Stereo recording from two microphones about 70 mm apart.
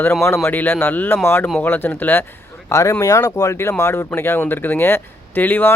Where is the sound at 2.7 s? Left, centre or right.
Left.